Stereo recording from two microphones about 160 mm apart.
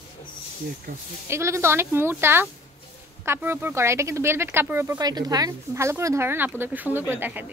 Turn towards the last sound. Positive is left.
turn(degrees=-10)  # may be behind; listen again after turning